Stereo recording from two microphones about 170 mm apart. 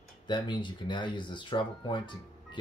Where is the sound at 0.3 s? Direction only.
25° left (ahead or behind).